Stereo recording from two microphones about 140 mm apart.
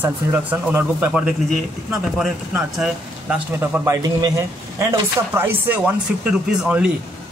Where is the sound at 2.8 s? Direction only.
10° right (ahead or behind).